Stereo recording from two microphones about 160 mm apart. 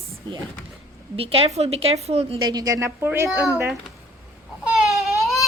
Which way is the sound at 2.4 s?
25° right (ahead or behind).